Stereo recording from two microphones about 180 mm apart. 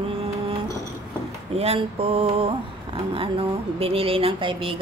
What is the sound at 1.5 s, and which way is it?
Speech, 35° right (ahead or behind).